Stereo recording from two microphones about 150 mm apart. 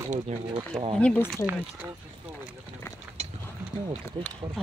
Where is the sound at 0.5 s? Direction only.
35° right (ahead or behind).